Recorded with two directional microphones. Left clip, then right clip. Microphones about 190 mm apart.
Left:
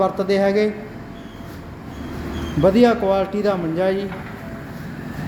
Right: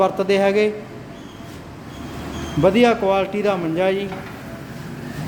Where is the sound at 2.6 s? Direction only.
Centre (ahead or behind).